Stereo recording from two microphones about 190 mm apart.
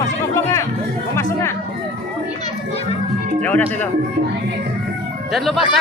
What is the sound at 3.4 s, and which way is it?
Speech, 10° left (ahead or behind).